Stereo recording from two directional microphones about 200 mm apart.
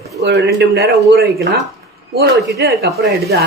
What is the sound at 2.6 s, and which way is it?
Speech, 55° right (ahead or behind).